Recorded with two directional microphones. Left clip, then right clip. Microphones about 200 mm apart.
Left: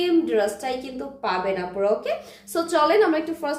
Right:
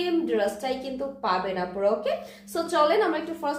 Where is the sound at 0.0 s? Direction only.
25° left (ahead or behind).